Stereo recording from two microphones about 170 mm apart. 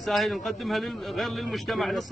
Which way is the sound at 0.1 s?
Centre (ahead or behind).